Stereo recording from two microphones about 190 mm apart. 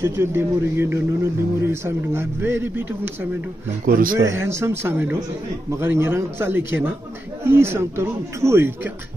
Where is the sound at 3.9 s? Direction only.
50° right (ahead or behind).